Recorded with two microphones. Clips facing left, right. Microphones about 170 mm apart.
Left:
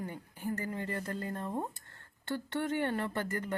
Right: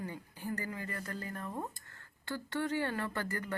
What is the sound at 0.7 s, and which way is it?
Speech, 30° left (ahead or behind).